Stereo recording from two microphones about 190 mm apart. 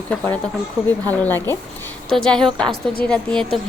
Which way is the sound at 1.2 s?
10° left (ahead or behind).